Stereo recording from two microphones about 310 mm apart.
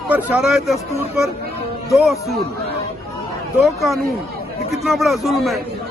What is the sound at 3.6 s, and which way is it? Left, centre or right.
A man's voice, centre.